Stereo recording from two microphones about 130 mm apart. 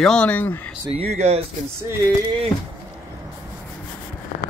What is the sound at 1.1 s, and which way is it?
Mantra, 60° right (ahead or behind).